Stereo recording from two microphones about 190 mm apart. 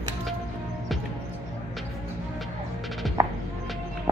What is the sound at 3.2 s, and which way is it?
Music, 15° right (ahead or behind).